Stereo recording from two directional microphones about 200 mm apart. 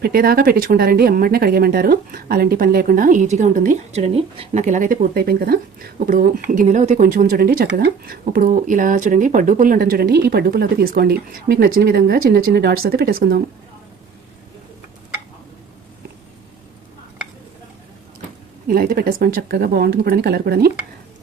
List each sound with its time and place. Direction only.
0.0 s speech: 50° right (ahead or behind)
18.7 s speech: 50° right (ahead or behind)